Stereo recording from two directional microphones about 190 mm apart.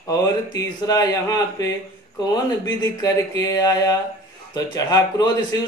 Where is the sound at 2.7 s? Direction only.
20° left (ahead or behind).